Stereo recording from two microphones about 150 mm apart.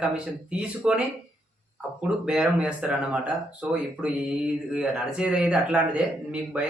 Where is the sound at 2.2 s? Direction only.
5° right (ahead or behind).